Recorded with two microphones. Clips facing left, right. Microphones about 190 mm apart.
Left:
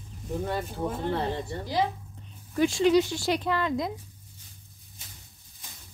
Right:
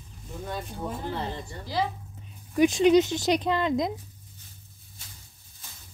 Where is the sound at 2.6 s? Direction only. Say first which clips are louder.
Right 3 dB; 20° right (ahead or behind).